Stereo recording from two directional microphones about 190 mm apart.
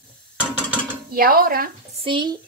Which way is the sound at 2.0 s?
25° right (ahead or behind).